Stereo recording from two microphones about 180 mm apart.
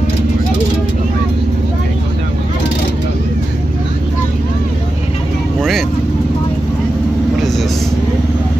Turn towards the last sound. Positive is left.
turn(degrees=0)  # may be behind; listen again after turning